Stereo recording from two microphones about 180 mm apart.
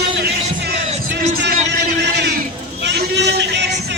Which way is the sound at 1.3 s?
60° right (ahead or behind).